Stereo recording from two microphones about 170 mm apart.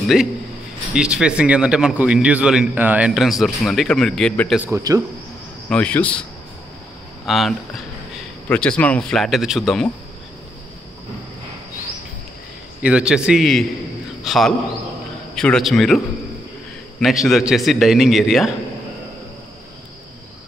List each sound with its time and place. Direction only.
0.1 s a man's voice: 5° right (ahead or behind)
4.6 s speech: 15° right (ahead or behind)
5.7 s speech: 5° left (ahead or behind)
7.2 s a man's voice: centre (ahead or behind)
12.8 s a man's voice: 5° right (ahead or behind)
17.3 s a man's voice: centre (ahead or behind)